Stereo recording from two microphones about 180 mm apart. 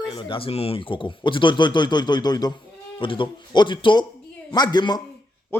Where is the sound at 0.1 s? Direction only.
25° left (ahead or behind).